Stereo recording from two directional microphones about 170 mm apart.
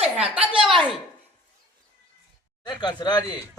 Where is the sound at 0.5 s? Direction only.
Centre (ahead or behind).